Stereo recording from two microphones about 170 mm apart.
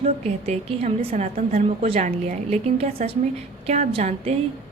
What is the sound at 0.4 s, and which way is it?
A woman's voice, 40° right (ahead or behind).